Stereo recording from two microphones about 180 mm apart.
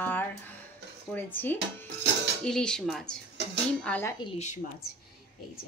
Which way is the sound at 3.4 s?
70° right (ahead or behind).